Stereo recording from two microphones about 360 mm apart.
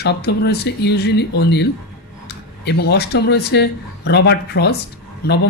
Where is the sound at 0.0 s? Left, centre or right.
Left.